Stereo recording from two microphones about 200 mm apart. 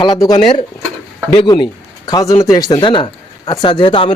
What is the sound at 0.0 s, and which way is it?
Speech, 20° left (ahead or behind).